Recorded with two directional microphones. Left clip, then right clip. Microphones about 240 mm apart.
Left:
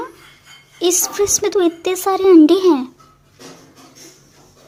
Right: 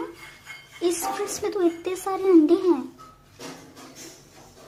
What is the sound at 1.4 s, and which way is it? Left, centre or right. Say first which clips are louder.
A woman's voice: left 8 dB; left.